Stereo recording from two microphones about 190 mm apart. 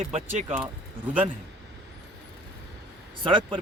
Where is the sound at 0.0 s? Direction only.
35° right (ahead or behind).